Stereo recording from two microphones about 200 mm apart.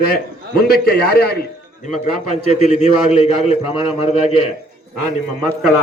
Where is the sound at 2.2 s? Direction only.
35° left (ahead or behind).